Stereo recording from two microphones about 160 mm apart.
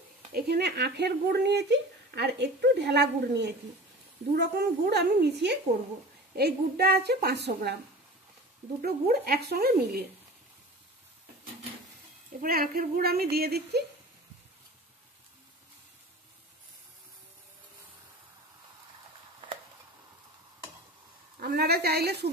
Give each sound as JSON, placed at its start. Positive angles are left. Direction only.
{"t": 0.3, "sound": "speech", "side_deg": -90}
{"t": 8.8, "sound": "speech", "side_deg": -70}
{"t": 12.4, "sound": "speech", "side_deg": -65}
{"t": 21.4, "sound": "speech", "side_deg": -80}